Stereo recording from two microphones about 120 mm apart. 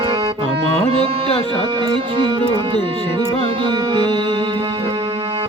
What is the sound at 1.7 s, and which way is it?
Music, 40° right (ahead or behind).